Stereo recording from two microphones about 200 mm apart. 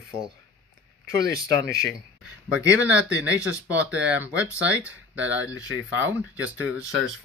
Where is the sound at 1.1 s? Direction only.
50° right (ahead or behind).